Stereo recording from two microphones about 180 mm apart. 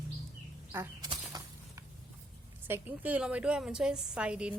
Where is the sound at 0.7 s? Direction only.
15° right (ahead or behind).